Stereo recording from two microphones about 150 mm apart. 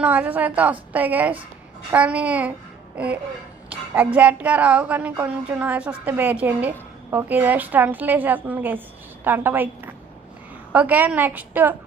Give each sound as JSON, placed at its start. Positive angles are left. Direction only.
{"t": 0.0, "sound": "a woman's voice", "side_deg": -10}
{"t": 3.7, "sound": "a woman's voice", "side_deg": -10}